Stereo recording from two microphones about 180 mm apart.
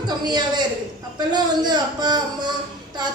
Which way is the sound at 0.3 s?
25° right (ahead or behind).